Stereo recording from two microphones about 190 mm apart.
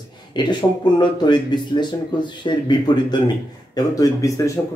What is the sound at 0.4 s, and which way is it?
Speech, 25° left (ahead or behind).